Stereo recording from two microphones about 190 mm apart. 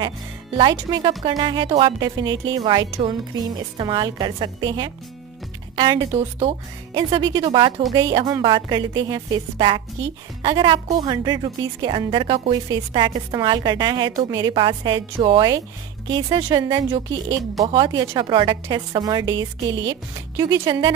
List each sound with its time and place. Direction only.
0.6 s a woman's voice: 20° right (ahead or behind)